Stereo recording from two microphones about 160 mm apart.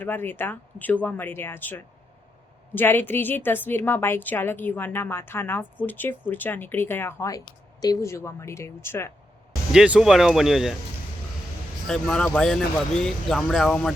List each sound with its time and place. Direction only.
0.0 s a woman's voice: 10° left (ahead or behind)
9.7 s speech: 5° right (ahead or behind)
11.9 s speech: 5° left (ahead or behind)